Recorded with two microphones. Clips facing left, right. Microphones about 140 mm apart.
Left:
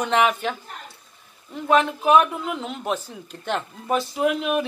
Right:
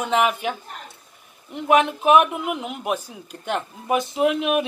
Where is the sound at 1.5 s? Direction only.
15° right (ahead or behind).